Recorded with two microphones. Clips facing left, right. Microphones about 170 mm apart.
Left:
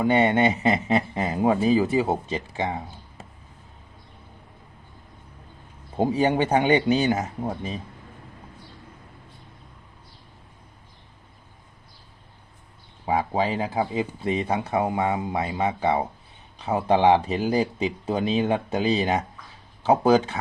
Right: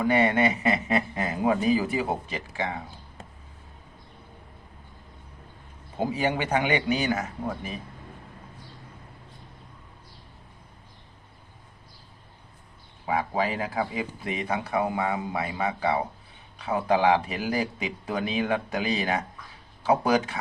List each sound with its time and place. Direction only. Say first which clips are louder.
0.0 s speech: left 3 dB; 25° left (ahead or behind)
3.2 s basketball bounce: even; 5° left (ahead or behind)
6.0 s speech: left 5 dB; 30° left (ahead or behind)
13.1 s speech: left 3 dB; 25° left (ahead or behind)